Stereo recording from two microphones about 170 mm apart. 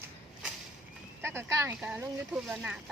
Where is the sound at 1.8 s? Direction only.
5° right (ahead or behind).